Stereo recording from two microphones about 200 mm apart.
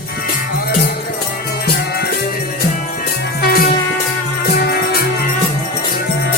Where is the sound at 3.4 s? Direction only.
50° left (ahead or behind).